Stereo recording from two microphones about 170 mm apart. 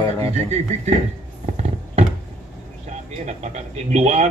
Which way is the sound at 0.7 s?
40° right (ahead or behind).